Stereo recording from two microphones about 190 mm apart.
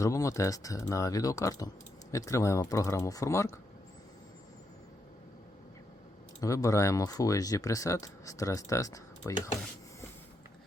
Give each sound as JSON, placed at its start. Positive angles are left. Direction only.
{"t": 0.0, "sound": "speech", "side_deg": 15}
{"t": 6.4, "sound": "speech", "side_deg": 15}